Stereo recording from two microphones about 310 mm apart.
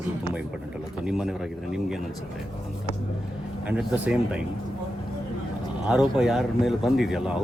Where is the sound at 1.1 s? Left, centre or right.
Centre.